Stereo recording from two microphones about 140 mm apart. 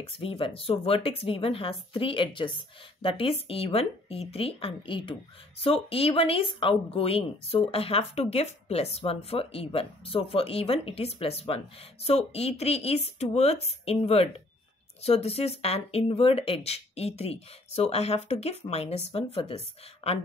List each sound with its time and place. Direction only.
0.0 s speech: 40° left (ahead or behind)